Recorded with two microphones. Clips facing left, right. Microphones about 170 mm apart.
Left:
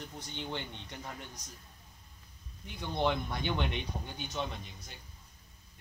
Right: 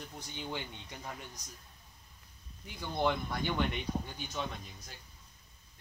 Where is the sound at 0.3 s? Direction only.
10° right (ahead or behind).